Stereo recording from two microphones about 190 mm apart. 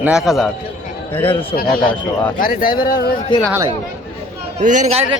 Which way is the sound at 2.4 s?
50° left (ahead or behind).